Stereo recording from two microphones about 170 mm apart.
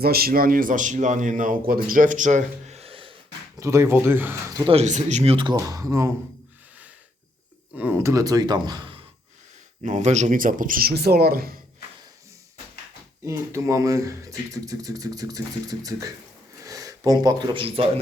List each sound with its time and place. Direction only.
0.0 s a man's voice: 65° right (ahead or behind); by 3.1 s 35° right (ahead or behind)
3.6 s speech: 15° right (ahead or behind)
4.6 s speech: 35° right (ahead or behind); by 6.1 s 15° right (ahead or behind)
7.8 s speech: 10° right (ahead or behind)
9.8 s a man's voice: 40° right (ahead or behind); by 11.5 s 65° right (ahead or behind)
13.2 s speech: 15° right (ahead or behind); by 17.8 s 35° right (ahead or behind)